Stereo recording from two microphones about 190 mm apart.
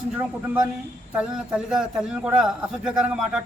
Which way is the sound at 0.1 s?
10° right (ahead or behind).